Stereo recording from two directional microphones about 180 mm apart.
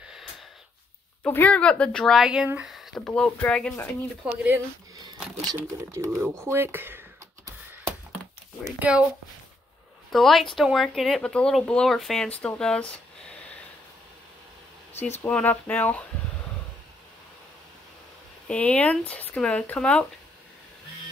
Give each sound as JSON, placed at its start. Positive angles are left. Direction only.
{"t": 1.2, "sound": "speech", "side_deg": 10}
{"t": 4.2, "sound": "speech", "side_deg": -5}
{"t": 5.5, "sound": "speech", "side_deg": -15}
{"t": 10.1, "sound": "speech", "side_deg": 0}
{"t": 15.0, "sound": "speech", "side_deg": 35}
{"t": 15.2, "sound": "speech", "side_deg": 10}
{"t": 18.5, "sound": "speech", "side_deg": 5}